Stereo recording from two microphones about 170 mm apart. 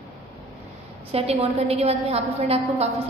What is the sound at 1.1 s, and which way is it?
A woman's voice, 35° right (ahead or behind).